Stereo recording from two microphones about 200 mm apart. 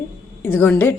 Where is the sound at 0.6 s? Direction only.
10° left (ahead or behind).